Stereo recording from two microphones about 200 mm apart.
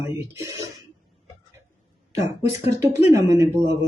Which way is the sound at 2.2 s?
15° right (ahead or behind).